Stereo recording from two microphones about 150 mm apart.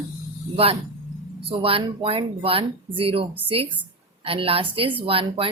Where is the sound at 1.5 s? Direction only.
40° right (ahead or behind).